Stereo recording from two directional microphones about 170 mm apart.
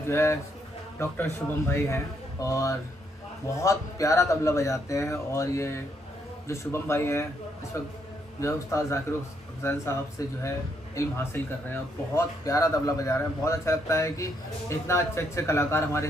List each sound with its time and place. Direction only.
0.0 s a man's voice: 15° left (ahead or behind)
11.0 s a man's voice: 20° left (ahead or behind)